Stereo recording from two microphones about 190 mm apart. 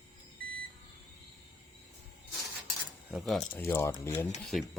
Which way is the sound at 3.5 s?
10° left (ahead or behind).